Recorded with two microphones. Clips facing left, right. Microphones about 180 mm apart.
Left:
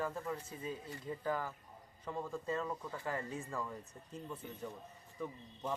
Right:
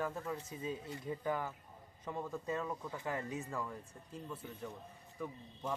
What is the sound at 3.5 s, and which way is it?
Speech, centre (ahead or behind).